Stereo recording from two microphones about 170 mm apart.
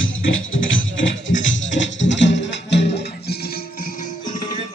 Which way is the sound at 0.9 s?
90° left.